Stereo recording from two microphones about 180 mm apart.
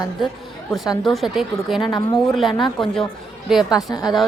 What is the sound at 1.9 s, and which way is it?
Speech, 25° left (ahead or behind).